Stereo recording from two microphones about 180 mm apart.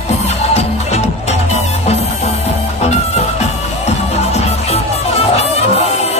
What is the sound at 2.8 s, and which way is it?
Music, 35° left (ahead or behind).